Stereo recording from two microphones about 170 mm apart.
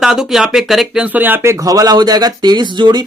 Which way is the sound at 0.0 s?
Centre (ahead or behind).